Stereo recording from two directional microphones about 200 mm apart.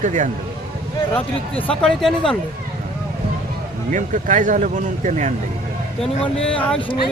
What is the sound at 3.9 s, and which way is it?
Speech, 40° right (ahead or behind).